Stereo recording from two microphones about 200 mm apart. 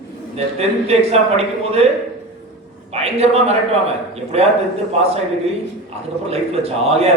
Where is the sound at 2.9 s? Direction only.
30° right (ahead or behind).